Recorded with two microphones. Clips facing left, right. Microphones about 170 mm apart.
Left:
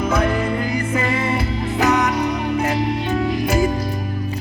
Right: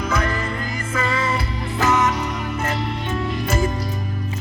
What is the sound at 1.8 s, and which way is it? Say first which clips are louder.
Music: left 1 dB; 15° left (ahead or behind).